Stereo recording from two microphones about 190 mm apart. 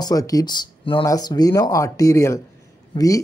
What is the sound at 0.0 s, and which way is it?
A man's voice, 20° left (ahead or behind).